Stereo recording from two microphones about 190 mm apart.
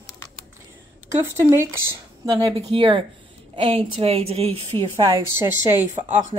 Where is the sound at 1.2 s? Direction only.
10° right (ahead or behind); by 4.6 s 30° right (ahead or behind).